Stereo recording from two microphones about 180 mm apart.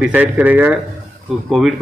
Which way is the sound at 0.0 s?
10° right (ahead or behind).